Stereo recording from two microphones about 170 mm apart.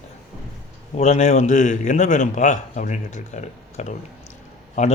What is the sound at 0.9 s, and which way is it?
A man's voice, 40° left (ahead or behind).